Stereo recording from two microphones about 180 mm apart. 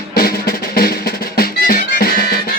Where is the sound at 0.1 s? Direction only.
55° left (ahead or behind).